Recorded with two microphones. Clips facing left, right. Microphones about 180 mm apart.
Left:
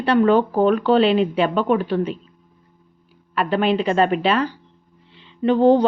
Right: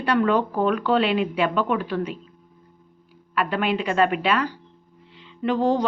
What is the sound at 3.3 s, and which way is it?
A woman's voice, 30° left (ahead or behind).